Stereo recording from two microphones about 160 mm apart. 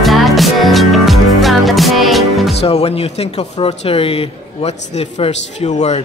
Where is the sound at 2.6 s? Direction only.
40° left (ahead or behind).